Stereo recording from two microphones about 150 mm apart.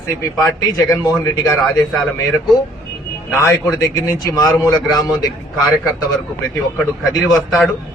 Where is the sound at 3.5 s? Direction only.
20° left (ahead or behind).